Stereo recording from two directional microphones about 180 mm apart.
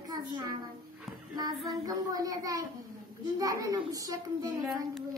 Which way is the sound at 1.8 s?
20° right (ahead or behind).